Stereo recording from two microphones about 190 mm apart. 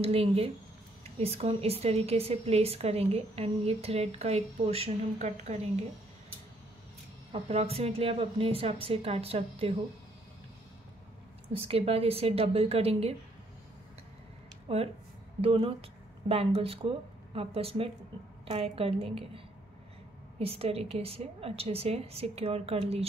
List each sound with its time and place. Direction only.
0.0 s speech: 30° right (ahead or behind)
7.4 s speech: 30° right (ahead or behind)
11.5 s speech: 30° right (ahead or behind)
14.7 s speech: 30° right (ahead or behind)